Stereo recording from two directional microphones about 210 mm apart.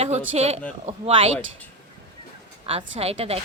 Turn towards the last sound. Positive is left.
turn(degrees=-30)  # may be behind; listen again after turning